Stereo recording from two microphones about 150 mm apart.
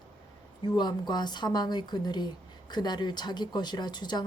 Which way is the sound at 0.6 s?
30° left (ahead or behind).